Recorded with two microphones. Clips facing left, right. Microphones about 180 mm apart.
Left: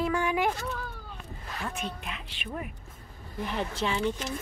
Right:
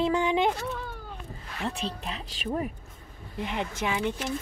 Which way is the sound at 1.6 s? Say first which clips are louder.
Right 4 dB; 30° right (ahead or behind).